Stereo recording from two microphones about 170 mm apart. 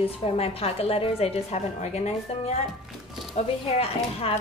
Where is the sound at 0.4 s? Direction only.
35° left (ahead or behind).